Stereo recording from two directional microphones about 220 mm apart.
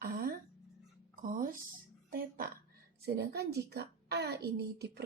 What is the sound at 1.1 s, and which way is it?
Music, 35° right (ahead or behind).